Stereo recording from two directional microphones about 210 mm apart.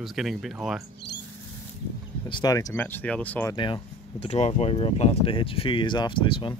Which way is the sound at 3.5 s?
25° left (ahead or behind).